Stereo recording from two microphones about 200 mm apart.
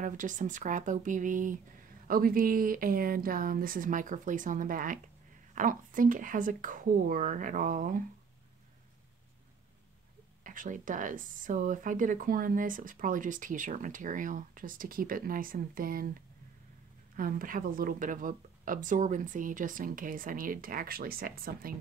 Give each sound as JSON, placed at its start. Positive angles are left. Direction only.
{"t": 0.0, "sound": "speech", "side_deg": -40}
{"t": 10.4, "sound": "speech", "side_deg": -40}
{"t": 17.2, "sound": "speech", "side_deg": -45}